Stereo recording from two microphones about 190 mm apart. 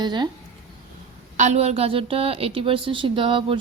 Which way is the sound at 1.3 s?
35° right (ahead or behind).